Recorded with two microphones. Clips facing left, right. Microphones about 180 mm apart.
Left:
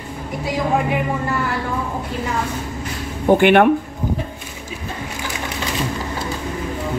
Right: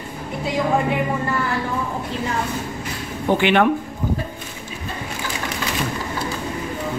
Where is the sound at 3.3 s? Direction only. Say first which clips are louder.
Left 5 dB; 50° left (ahead or behind).